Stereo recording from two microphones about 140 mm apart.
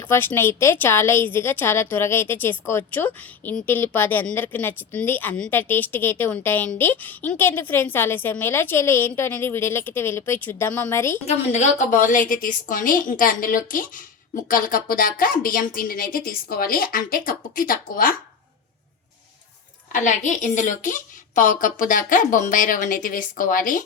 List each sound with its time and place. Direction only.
0.0 s a woman's voice: 15° left (ahead or behind)
11.3 s a woman's voice: 55° left (ahead or behind); by 14.0 s 75° left (ahead or behind)
14.4 s speech: 85° left
19.9 s a woman's voice: 65° left (ahead or behind)